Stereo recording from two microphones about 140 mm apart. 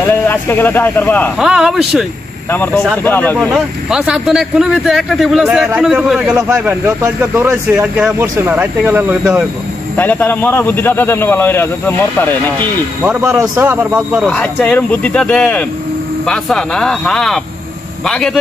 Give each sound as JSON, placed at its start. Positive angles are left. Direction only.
{"t": 0.3, "sound": "speech", "side_deg": 15}
{"t": 1.4, "sound": "speech", "side_deg": 0}
{"t": 2.5, "sound": "speech", "side_deg": 15}
{"t": 3.3, "sound": "speech", "side_deg": 0}
{"t": 6.6, "sound": "speech", "side_deg": -15}
{"t": 9.9, "sound": "speech", "side_deg": 15}
{"t": 13.0, "sound": "speech", "side_deg": -10}
{"t": 14.2, "sound": "speech", "side_deg": 10}